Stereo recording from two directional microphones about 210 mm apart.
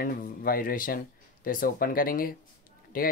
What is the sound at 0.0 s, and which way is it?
Speech, 45° left (ahead or behind).